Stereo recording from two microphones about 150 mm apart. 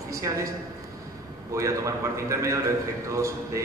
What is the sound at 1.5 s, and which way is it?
A man's voice, 20° right (ahead or behind).